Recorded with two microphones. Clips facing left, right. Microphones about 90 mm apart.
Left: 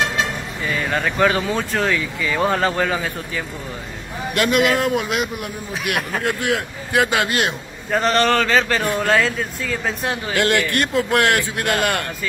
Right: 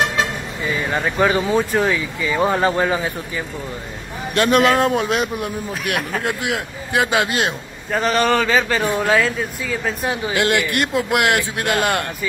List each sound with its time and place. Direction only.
0.7 s speech: 10° right (ahead or behind)
4.4 s a man's voice: 35° right (ahead or behind)
6.2 s a man's voice: 20° right (ahead or behind)
7.9 s speech: 5° right (ahead or behind)
10.2 s a man's voice: 20° right (ahead or behind)